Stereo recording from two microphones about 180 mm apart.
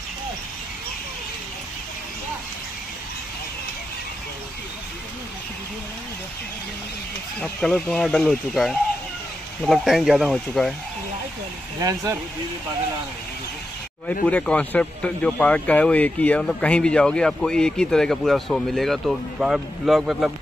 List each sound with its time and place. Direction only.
7.3 s a man's voice: 5° left (ahead or behind)
11.8 s speech: 15° right (ahead or behind)
14.2 s a man's voice: 10° left (ahead or behind)